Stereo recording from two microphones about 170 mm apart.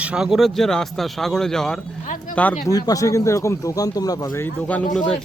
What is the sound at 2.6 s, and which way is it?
Speech, 20° left (ahead or behind).